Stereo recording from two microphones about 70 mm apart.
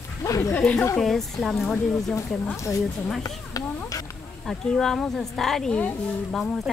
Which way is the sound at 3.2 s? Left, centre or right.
Left.